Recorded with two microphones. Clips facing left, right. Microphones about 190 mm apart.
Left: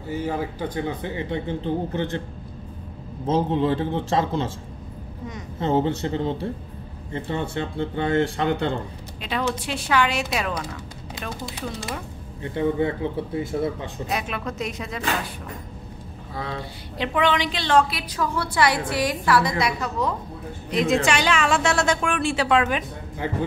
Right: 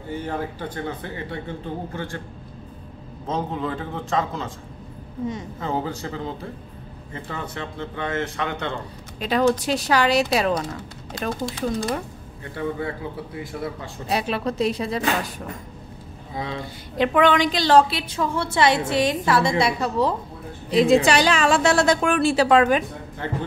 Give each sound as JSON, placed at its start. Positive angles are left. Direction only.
{"t": 0.1, "sound": "speech", "side_deg": 10}
{"t": 3.3, "sound": "speech", "side_deg": 30}
{"t": 5.6, "sound": "speech", "side_deg": 25}
{"t": 9.2, "sound": "a woman's voice", "side_deg": -40}
{"t": 12.5, "sound": "speech", "side_deg": 25}
{"t": 14.0, "sound": "a woman's voice", "side_deg": -30}
{"t": 17.0, "sound": "a woman's voice", "side_deg": -50}
{"t": 23.2, "sound": "speech", "side_deg": 10}